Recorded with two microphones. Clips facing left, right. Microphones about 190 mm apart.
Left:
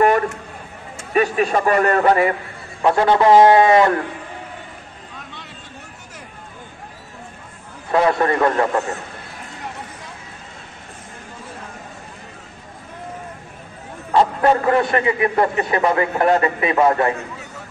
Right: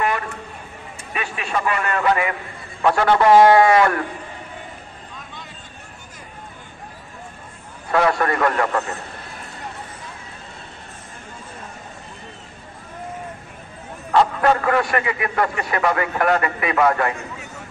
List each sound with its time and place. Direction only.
1.1 s a man's voice: 40° left (ahead or behind)
2.8 s a man's voice: 25° left (ahead or behind)
7.9 s a man's voice: 25° left (ahead or behind)
14.1 s a man's voice: 25° left (ahead or behind)